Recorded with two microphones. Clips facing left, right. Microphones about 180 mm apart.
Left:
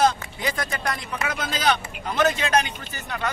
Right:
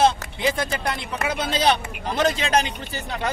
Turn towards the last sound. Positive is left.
turn(degrees=-30)  # may be behind; listen again after turning